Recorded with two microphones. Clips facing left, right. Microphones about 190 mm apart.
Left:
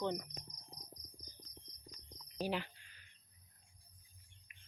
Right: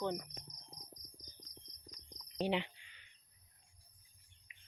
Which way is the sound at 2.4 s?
20° right (ahead or behind).